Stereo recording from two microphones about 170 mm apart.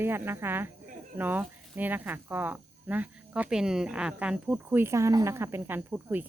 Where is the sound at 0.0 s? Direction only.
15° right (ahead or behind).